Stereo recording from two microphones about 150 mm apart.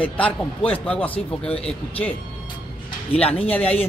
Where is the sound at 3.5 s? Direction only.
10° left (ahead or behind).